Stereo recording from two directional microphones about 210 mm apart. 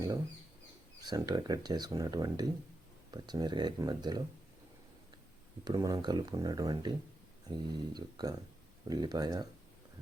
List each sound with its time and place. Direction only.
1.1 s speech: 15° right (ahead or behind)
5.6 s speech: 20° right (ahead or behind)